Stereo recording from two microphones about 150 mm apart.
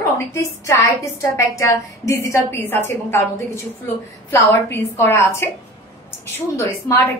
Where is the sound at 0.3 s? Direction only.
20° left (ahead or behind).